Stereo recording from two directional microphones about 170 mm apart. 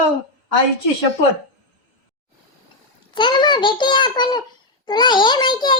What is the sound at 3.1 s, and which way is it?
A child's voice, 25° left (ahead or behind).